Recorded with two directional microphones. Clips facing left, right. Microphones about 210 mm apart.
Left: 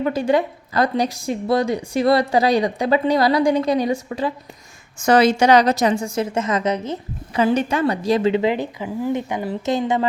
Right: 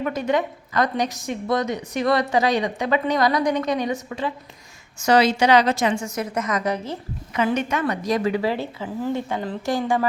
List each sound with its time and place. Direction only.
0.0 s a woman's voice: 30° left (ahead or behind)
4.9 s a woman's voice: 50° left (ahead or behind); by 7.0 s 20° left (ahead or behind)
7.3 s a woman's voice: 35° left (ahead or behind)